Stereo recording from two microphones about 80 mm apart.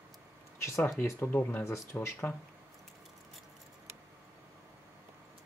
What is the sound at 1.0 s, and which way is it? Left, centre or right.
Speech, left.